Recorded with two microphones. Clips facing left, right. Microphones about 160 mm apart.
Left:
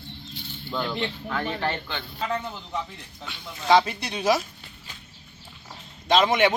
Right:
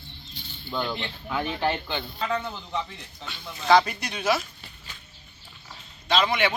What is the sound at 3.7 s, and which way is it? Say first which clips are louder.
Speech: even; 25° left (ahead or behind).